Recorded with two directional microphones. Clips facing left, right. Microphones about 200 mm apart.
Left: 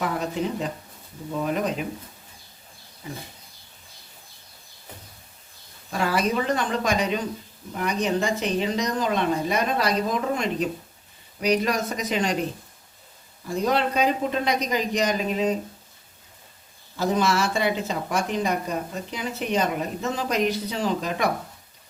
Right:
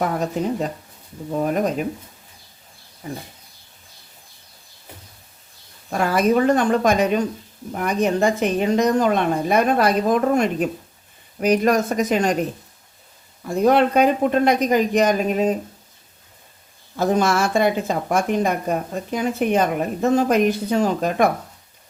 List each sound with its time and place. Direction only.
0.0 s speech: 45° right (ahead or behind)
5.9 s speech: 50° right (ahead or behind)
17.0 s speech: 50° right (ahead or behind)